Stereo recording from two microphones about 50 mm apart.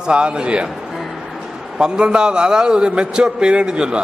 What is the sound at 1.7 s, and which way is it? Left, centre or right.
A man's voice, centre.